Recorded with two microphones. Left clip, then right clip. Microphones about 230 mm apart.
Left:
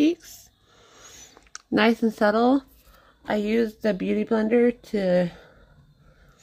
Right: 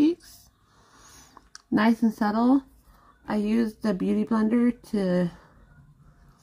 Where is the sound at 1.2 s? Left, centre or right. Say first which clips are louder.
Left 5 dB; centre.